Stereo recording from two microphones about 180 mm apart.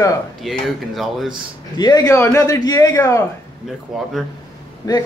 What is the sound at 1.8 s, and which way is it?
A man's voice, 20° left (ahead or behind).